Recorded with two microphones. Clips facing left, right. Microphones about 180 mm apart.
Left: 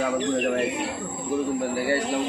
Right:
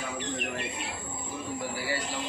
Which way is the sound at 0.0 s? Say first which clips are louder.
Left 11 dB; 75° left (ahead or behind).